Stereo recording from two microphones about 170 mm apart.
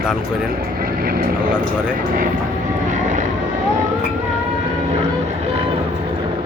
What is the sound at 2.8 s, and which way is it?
Vehicle, 45° right (ahead or behind).